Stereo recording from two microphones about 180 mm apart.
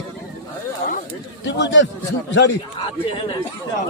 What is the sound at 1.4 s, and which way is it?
Speech, 80° left.